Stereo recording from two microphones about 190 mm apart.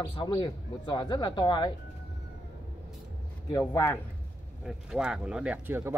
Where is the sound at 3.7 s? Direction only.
15° left (ahead or behind).